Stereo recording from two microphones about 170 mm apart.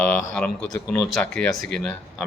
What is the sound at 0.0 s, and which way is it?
Speech, 5° left (ahead or behind).